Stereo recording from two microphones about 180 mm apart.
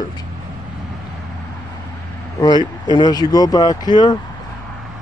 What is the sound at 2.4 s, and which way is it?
Speech, 25° left (ahead or behind).